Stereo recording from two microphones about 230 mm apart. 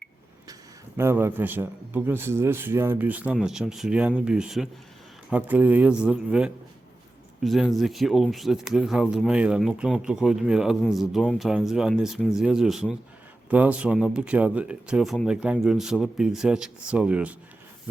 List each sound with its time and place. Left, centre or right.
0.9 s speech: centre